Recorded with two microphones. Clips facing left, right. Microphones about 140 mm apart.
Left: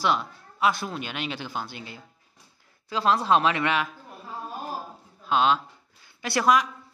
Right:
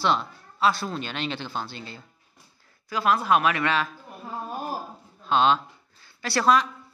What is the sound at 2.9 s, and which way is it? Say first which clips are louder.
Speech: even; 25° left (ahead or behind).